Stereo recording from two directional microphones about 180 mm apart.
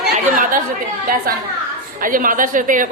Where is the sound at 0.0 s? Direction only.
50° right (ahead or behind).